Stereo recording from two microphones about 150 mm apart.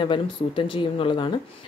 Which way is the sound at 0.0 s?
35° left (ahead or behind).